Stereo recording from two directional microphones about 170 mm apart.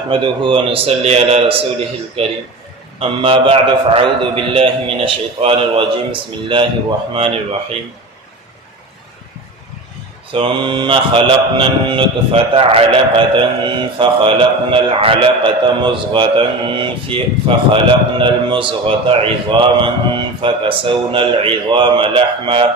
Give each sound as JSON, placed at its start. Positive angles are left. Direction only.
{"t": 0.1, "sound": "a man's voice", "side_deg": -30}
{"t": 10.3, "sound": "mantra", "side_deg": -30}
{"t": 17.7, "sound": "a man's voice", "side_deg": -30}